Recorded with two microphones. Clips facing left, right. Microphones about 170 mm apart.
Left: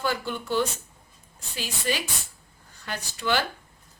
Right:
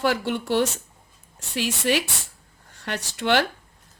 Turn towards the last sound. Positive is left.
turn(degrees=-75)  # may be behind; listen again after turning